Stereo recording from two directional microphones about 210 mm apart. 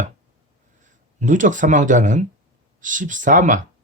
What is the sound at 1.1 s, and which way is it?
Speech, 35° right (ahead or behind).